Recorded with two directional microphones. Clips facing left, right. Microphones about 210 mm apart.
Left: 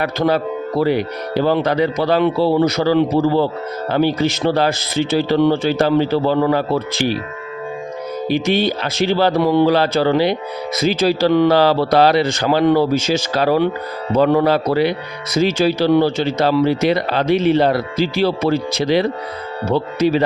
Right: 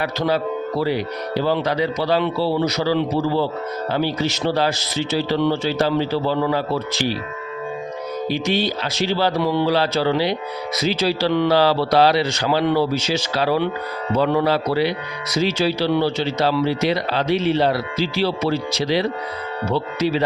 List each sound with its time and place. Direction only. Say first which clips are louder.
0.0 s speech: left 4 dB; 50° left (ahead or behind)
8.3 s speech: left 5 dB; 55° left (ahead or behind)